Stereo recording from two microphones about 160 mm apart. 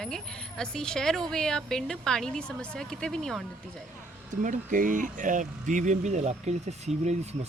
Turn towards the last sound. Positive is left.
turn(degrees=-45)  # may be behind; listen again after turning